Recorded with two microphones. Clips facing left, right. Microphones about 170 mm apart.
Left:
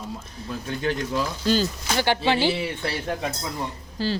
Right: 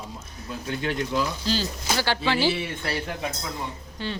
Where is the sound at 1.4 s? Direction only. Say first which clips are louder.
Left 5 dB; 45° left (ahead or behind).